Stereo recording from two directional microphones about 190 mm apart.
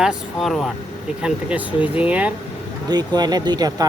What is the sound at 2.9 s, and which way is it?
Speech, 20° right (ahead or behind).